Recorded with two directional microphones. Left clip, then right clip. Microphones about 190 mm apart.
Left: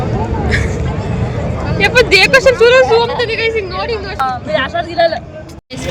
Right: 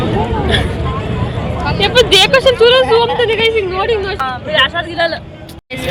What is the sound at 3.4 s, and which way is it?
A woman's voice, 5° right (ahead or behind).